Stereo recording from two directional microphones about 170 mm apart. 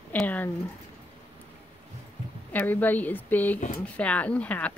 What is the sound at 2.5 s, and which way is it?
A woman's voice, 10° left (ahead or behind).